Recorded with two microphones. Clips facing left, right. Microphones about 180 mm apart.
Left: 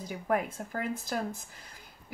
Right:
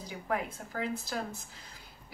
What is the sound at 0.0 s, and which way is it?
A woman's voice, 50° left (ahead or behind).